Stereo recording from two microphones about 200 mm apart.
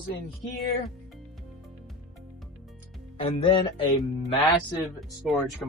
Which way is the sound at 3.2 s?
25° left (ahead or behind).